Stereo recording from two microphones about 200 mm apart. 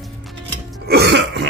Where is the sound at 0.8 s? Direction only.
55° right (ahead or behind).